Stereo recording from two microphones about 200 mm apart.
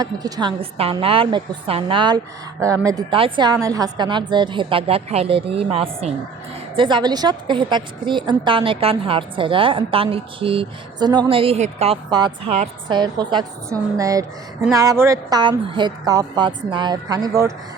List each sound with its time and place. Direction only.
0.0 s a woman's voice: 20° right (ahead or behind)
12.1 s a woman's voice: 20° right (ahead or behind)